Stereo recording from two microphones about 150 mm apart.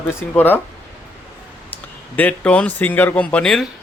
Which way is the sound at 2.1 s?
10° left (ahead or behind).